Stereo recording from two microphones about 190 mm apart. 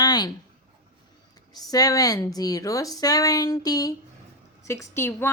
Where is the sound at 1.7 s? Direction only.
20° left (ahead or behind).